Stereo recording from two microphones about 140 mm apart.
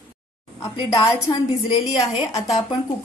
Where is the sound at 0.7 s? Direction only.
35° left (ahead or behind).